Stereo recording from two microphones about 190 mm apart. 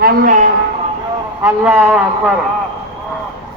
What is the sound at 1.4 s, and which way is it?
Speech, 10° right (ahead or behind).